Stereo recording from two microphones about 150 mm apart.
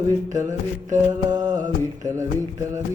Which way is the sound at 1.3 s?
25° right (ahead or behind).